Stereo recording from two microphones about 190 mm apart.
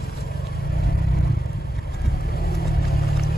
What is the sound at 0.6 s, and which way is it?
Vehicle, 55° left (ahead or behind).